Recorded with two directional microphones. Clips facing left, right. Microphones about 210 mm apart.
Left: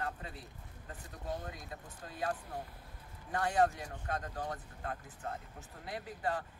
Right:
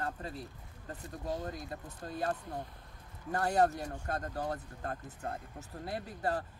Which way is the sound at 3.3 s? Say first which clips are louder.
Right 2 dB; 40° right (ahead or behind).